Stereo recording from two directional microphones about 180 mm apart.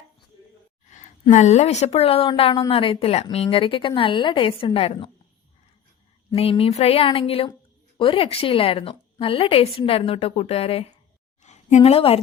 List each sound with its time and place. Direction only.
0.9 s a sound: 40° left (ahead or behind)
1.3 s a woman's voice: 40° left (ahead or behind)
6.3 s a woman's voice: 35° left (ahead or behind)